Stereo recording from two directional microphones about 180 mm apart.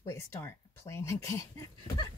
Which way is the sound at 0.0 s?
15° left (ahead or behind).